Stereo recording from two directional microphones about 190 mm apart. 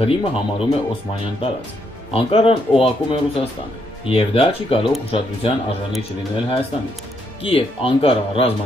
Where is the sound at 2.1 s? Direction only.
30° left (ahead or behind).